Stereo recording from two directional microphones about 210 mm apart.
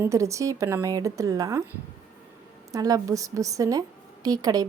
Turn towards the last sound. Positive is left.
turn(degrees=-20)  # may be behind; listen again after turning